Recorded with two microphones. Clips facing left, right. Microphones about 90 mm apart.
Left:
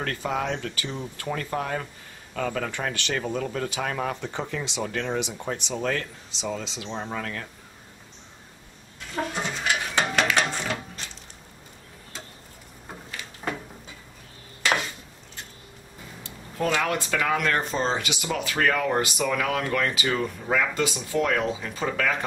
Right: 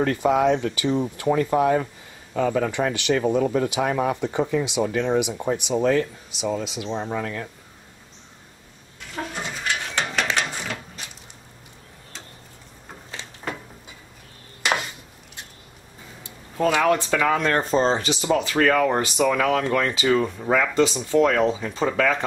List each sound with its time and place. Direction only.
0.0 s speech: 15° right (ahead or behind)
9.1 s goat: centre (ahead or behind)
16.2 s a sound: 15° right (ahead or behind)
16.8 s speech: 25° right (ahead or behind)
20.7 s speech: 30° right (ahead or behind)